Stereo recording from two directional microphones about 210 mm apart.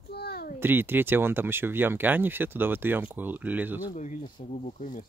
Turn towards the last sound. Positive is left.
turn(degrees=40)  # may be behind; listen again after turning